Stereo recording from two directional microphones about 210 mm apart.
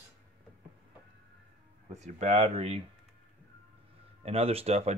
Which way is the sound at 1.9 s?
35° right (ahead or behind).